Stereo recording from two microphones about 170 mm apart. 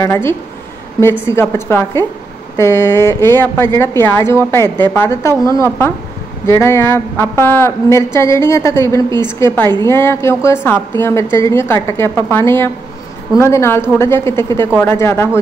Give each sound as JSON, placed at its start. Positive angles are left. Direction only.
{"t": 0.0, "sound": "a woman's voice", "side_deg": 15}